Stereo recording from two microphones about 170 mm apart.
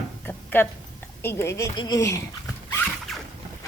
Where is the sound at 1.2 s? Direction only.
15° left (ahead or behind).